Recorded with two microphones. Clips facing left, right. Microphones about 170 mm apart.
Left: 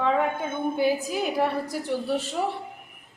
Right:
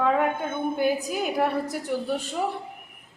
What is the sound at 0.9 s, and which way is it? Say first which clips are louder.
Speech: even; centre (ahead or behind).